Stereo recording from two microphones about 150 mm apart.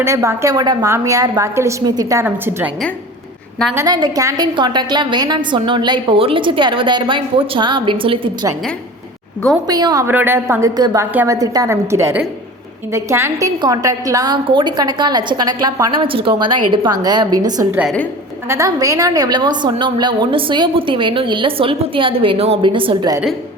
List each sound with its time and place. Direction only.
0.0 s a woman's voice: 20° right (ahead or behind)
3.8 s a woman's voice: 25° right (ahead or behind)
9.6 s a woman's voice: 25° right (ahead or behind)
10.1 s a woman's voice: 15° right (ahead or behind)